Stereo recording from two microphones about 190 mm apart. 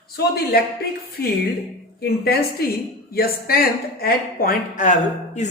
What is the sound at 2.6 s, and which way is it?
A woman's voice, 55° left (ahead or behind).